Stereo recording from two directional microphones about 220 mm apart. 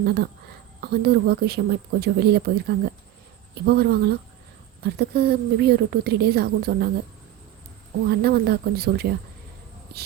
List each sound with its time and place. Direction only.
0.0 s a woman's voice: 45° right (ahead or behind)
8.1 s a woman's voice: 45° right (ahead or behind)